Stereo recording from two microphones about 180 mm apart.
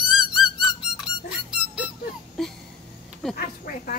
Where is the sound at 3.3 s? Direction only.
55° left (ahead or behind).